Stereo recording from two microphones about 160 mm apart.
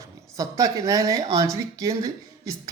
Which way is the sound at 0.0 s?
20° right (ahead or behind).